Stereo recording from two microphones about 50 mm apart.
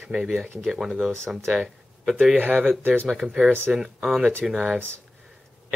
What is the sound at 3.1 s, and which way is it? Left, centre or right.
Speech, centre.